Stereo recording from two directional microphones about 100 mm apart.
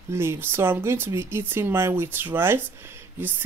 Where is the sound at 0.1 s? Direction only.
25° right (ahead or behind).